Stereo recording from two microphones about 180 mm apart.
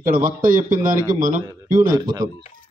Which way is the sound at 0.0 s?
50° right (ahead or behind).